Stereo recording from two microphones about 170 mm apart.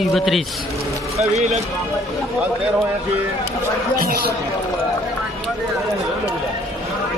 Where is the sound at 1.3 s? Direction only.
40° right (ahead or behind).